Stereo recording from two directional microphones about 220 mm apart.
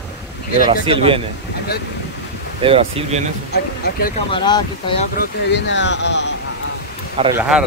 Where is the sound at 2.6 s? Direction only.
25° right (ahead or behind).